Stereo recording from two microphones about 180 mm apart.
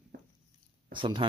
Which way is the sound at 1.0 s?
25° right (ahead or behind).